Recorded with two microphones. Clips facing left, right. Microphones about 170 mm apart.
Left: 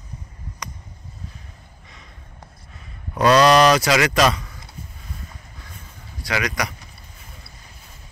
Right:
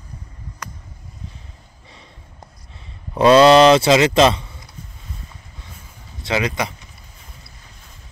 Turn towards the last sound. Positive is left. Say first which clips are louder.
# right 3 dB
turn(degrees=-25)  # may be behind; listen again after turning